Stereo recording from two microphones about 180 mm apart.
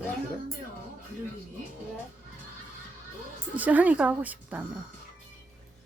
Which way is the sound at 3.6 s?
10° right (ahead or behind).